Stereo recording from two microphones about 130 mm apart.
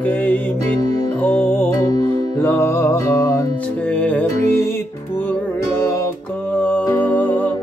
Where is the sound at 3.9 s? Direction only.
10° left (ahead or behind).